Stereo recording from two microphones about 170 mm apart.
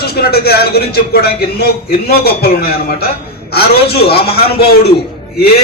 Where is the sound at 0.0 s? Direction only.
65° left (ahead or behind).